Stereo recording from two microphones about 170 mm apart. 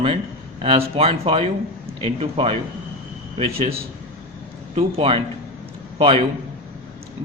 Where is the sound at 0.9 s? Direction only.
35° right (ahead or behind).